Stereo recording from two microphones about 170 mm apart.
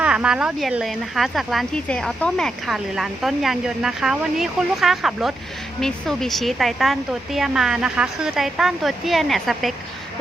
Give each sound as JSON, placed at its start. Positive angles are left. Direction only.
{"t": 0.0, "sound": "speech", "side_deg": -5}